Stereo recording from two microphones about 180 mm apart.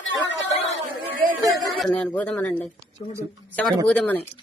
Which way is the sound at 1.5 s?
Centre (ahead or behind).